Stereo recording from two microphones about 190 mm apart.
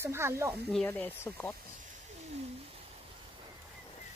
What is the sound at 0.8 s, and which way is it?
Speech, 10° left (ahead or behind).